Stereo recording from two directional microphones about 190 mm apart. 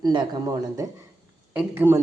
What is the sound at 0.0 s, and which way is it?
A woman's voice, 20° right (ahead or behind).